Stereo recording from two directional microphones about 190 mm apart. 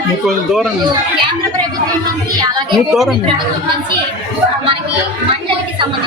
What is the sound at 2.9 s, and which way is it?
Speech, centre (ahead or behind).